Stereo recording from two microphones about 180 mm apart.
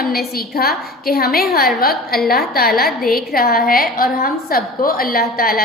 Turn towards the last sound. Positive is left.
turn(degrees=55)  # may be behind; listen again after turning